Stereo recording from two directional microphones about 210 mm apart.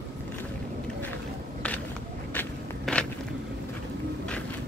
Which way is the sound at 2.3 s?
5° left (ahead or behind).